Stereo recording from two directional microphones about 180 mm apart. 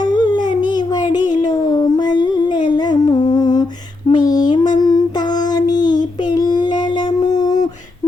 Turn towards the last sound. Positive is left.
turn(degrees=20)  # may be behind; listen again after turning